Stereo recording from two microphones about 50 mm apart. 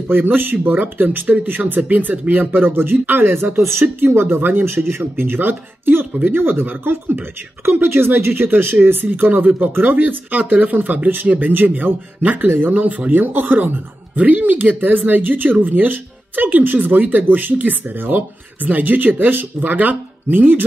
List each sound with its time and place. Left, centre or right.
0.1 s speech: right
4.6 s speech: right
12.7 s speech: right